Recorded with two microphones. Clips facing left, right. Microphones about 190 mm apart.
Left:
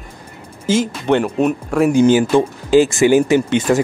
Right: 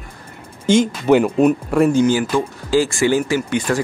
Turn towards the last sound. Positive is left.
turn(degrees=20)  # may be behind; listen again after turning